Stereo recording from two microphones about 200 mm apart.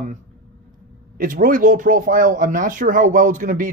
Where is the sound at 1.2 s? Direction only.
45° right (ahead or behind).